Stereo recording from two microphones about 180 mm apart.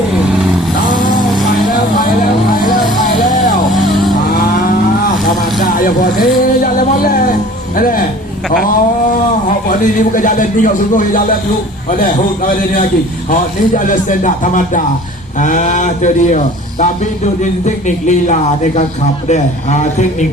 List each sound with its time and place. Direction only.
5.7 s vehicle: 50° left (ahead or behind)
7.8 s a sound: 50° left (ahead or behind)
9.6 s a man's voice: 50° left (ahead or behind)